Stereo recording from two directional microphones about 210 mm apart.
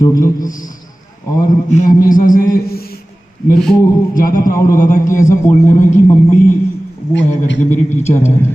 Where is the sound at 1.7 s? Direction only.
35° left (ahead or behind).